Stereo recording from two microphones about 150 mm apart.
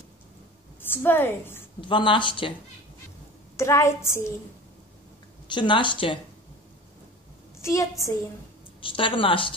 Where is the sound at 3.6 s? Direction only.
20° left (ahead or behind).